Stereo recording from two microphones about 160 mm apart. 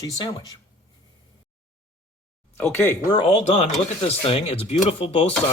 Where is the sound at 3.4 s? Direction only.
45° left (ahead or behind).